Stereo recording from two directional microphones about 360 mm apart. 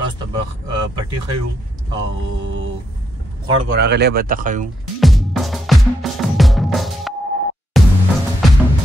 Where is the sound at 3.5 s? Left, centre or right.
Right.